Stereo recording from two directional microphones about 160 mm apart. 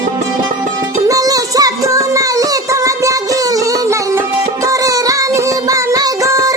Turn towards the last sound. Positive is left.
turn(degrees=-20)  # may be behind; listen again after turning